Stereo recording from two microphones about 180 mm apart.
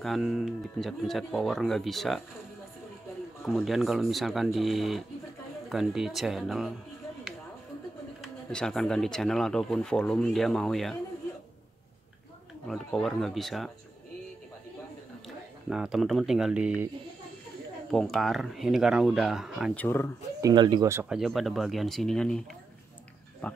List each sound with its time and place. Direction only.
0.0 s speech: centre (ahead or behind)
3.4 s speech: centre (ahead or behind)
8.2 s speech: 5° left (ahead or behind)
12.6 s speech: centre (ahead or behind)
15.7 s speech: 5° right (ahead or behind)
17.9 s speech: centre (ahead or behind)
19.8 s speech: 15° left (ahead or behind)
20.3 s speech: 20° right (ahead or behind)
21.1 s speech: centre (ahead or behind)
23.4 s speech: 5° left (ahead or behind)